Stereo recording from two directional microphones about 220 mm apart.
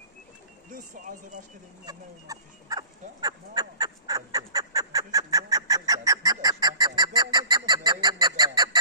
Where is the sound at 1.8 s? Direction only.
15° right (ahead or behind).